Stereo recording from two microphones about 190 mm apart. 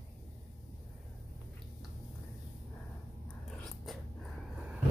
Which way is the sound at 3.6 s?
Centre (ahead or behind).